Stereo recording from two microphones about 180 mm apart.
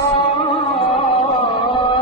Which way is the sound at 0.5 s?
35° left (ahead or behind).